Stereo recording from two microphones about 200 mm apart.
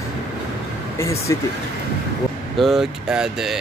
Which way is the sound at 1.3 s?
15° left (ahead or behind).